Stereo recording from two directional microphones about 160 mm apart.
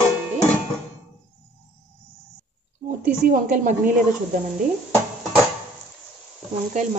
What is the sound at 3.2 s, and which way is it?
Speech, 55° right (ahead or behind).